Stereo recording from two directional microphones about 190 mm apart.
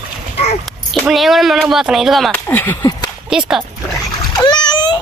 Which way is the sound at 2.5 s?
10° left (ahead or behind).